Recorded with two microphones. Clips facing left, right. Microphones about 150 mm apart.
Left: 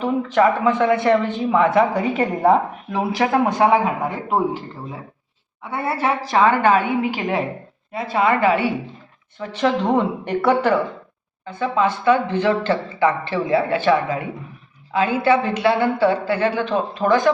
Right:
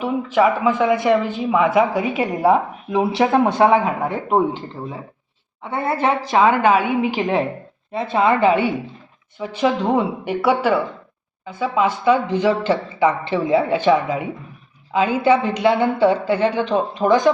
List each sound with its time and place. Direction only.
0.0 s speech: 10° right (ahead or behind)
5.6 s a woman's voice: 20° right (ahead or behind)